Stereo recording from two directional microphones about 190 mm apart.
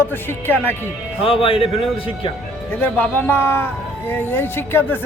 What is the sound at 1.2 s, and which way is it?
Speech, 30° left (ahead or behind).